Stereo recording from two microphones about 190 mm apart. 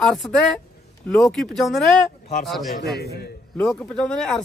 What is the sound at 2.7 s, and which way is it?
Speech, 55° left (ahead or behind).